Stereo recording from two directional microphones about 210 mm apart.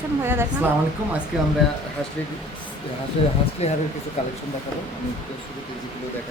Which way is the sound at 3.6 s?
30° left (ahead or behind).